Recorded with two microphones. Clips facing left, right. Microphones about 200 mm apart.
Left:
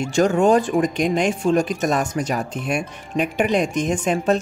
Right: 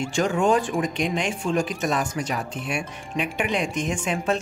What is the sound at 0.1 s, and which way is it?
Speech, 40° left (ahead or behind).